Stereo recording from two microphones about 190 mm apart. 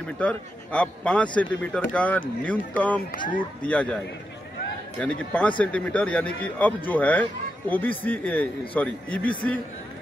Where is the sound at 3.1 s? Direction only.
45° left (ahead or behind).